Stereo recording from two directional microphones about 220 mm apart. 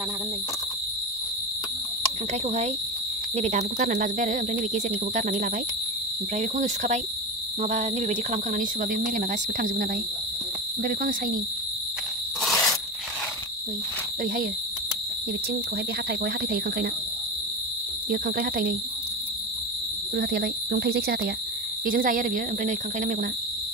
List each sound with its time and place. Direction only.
3.3 s speech: 30° right (ahead or behind)
12.4 s cricket: centre (ahead or behind)
16.1 s speech: 45° right (ahead or behind)
18.1 s speech: 40° right (ahead or behind)
20.2 s speech: 45° right (ahead or behind)